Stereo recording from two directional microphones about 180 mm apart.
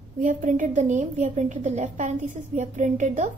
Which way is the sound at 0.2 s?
45° right (ahead or behind).